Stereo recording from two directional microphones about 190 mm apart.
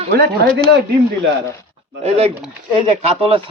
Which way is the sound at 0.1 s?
60° right (ahead or behind).